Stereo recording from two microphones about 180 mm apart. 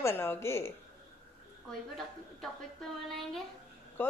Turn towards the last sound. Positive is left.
turn(degrees=10)  # may be behind; listen again after turning